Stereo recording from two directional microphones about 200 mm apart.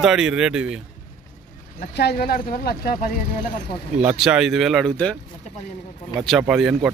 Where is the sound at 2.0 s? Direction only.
50° left (ahead or behind).